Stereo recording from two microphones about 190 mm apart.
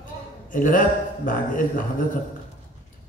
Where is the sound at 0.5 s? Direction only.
45° left (ahead or behind).